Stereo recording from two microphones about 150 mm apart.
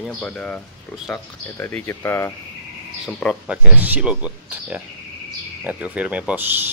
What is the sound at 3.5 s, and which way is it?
Speech, 10° right (ahead or behind).